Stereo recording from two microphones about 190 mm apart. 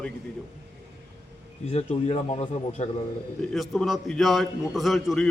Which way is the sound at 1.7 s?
35° left (ahead or behind).